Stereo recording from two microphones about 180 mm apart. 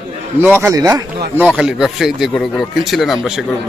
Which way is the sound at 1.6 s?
5° right (ahead or behind).